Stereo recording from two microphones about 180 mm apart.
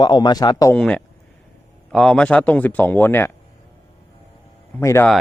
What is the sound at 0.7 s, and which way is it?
Speech, 5° left (ahead or behind).